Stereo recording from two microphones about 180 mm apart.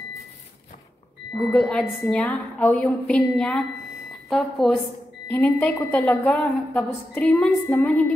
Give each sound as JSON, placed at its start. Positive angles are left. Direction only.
{"t": 1.5, "sound": "a woman's voice", "side_deg": 5}